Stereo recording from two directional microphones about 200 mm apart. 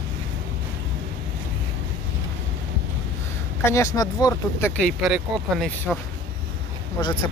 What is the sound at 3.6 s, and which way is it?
Speech, 15° left (ahead or behind).